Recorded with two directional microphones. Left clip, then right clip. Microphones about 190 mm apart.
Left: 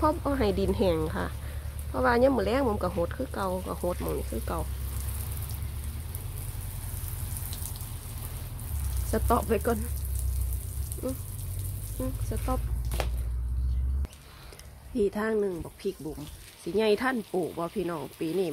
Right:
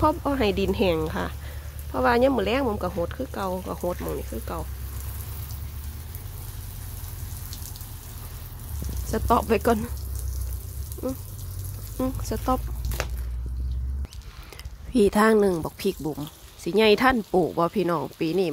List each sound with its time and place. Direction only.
0.0 s speech: 10° right (ahead or behind)
9.1 s speech: 15° right (ahead or behind)
11.0 s speech: 15° right (ahead or behind)
12.0 s speech: 25° right (ahead or behind)
15.0 s speech: 30° right (ahead or behind)